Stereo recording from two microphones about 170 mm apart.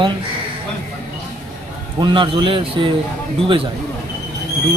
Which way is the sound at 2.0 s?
30° right (ahead or behind).